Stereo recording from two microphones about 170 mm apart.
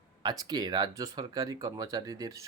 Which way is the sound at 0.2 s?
25° right (ahead or behind).